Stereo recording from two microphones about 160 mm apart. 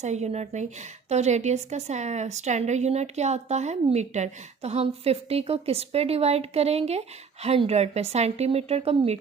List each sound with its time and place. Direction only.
0.0 s a woman's voice: 45° right (ahead or behind)